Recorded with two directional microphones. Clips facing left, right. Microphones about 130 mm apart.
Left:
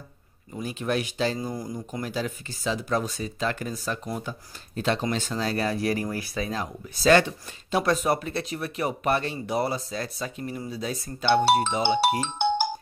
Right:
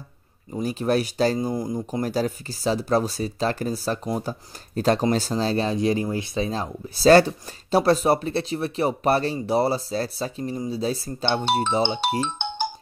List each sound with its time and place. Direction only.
0.6 s speech: 40° right (ahead or behind)
1.4 s speech: 25° right (ahead or behind)
1.9 s speech: 40° right (ahead or behind)